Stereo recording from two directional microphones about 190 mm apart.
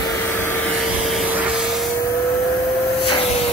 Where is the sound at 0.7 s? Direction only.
Centre (ahead or behind).